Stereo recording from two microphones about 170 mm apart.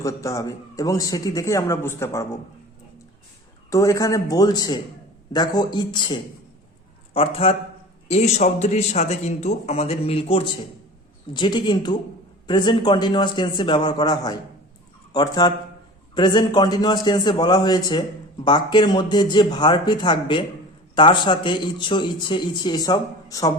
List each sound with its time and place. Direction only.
0.0 s a man's voice: 20° left (ahead or behind)
3.7 s a man's voice: 20° left (ahead or behind)